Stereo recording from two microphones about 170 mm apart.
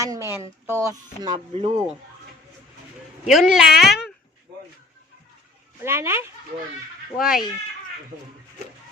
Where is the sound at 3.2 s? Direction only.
Centre (ahead or behind).